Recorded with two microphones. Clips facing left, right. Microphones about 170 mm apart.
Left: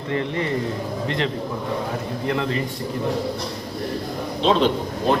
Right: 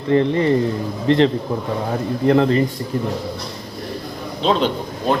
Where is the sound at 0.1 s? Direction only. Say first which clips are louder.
Right 9 dB; 35° right (ahead or behind).